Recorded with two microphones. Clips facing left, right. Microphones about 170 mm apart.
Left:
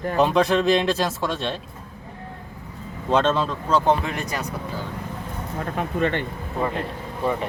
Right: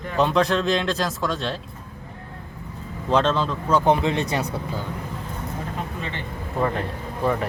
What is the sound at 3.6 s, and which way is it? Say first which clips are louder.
Speech: right 2 dB; 15° right (ahead or behind).